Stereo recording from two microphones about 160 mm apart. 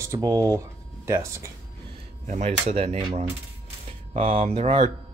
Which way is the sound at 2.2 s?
45° right (ahead or behind).